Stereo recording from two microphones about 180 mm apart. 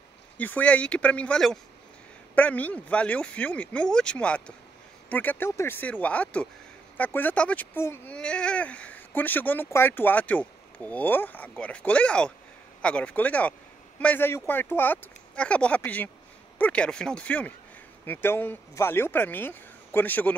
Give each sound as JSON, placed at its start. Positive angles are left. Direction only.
{"t": 0.4, "sound": "speech", "side_deg": 10}